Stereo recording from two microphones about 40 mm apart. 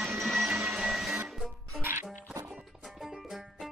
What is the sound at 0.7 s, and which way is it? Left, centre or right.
Music, centre.